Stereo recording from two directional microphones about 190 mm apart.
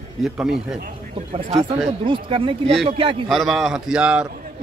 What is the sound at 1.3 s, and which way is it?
Speech, 30° right (ahead or behind).